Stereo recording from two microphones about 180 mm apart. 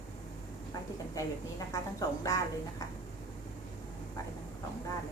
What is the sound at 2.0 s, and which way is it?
Speech, 20° left (ahead or behind).